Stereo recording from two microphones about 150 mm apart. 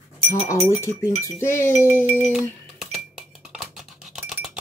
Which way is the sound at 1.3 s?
15° left (ahead or behind).